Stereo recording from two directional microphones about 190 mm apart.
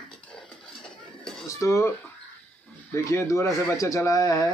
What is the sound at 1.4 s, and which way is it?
Speech, 15° left (ahead or behind).